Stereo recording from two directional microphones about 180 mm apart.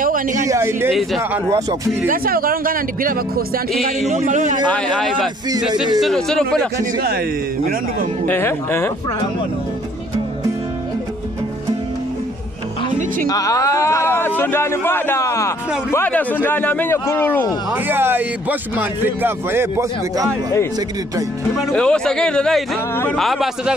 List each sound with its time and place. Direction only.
0.0 s a sound: 45° right (ahead or behind)
0.5 s speech: 15° right (ahead or behind)
0.9 s speech: centre (ahead or behind)
2.0 s speech: 55° right (ahead or behind)
4.6 s speech: 5° left (ahead or behind)
8.3 s speech: 10° left (ahead or behind)
13.3 s speech: 20° left (ahead or behind)
17.8 s speech: 10° right (ahead or behind)
21.7 s speech: 5° left (ahead or behind)